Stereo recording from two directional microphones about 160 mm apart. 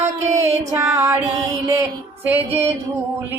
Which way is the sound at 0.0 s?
45° right (ahead or behind).